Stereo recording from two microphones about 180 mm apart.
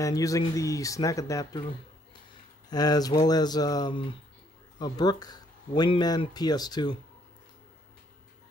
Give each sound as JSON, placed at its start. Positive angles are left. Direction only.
{"t": 0.0, "sound": "speech", "side_deg": 20}
{"t": 2.7, "sound": "speech", "side_deg": 20}